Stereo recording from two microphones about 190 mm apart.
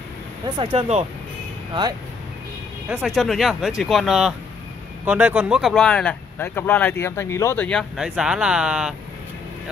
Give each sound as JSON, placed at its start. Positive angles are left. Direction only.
{"t": 0.6, "sound": "speech", "side_deg": -30}
{"t": 2.9, "sound": "speech", "side_deg": 0}